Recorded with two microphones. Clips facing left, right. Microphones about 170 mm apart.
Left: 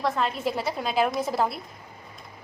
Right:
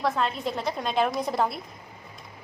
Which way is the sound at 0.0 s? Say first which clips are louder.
Left 1 dB; centre (ahead or behind).